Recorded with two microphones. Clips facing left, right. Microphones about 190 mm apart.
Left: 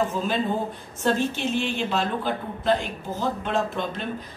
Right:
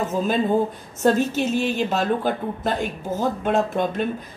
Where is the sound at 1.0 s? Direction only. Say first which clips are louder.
Right 5 dB; 45° right (ahead or behind).